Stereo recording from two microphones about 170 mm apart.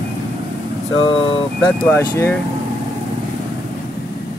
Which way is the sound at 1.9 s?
15° left (ahead or behind).